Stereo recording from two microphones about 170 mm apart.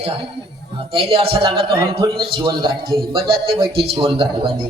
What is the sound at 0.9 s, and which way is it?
Speech, 35° right (ahead or behind).